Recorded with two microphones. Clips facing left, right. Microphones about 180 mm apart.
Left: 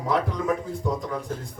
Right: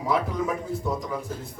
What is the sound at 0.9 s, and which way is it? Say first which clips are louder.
Speech: left 2 dB; 5° right (ahead or behind).